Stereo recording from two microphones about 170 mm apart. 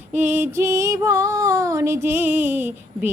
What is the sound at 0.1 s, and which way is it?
Female singing, 10° right (ahead or behind).